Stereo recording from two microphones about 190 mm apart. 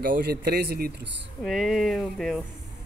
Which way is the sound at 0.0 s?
50° right (ahead or behind).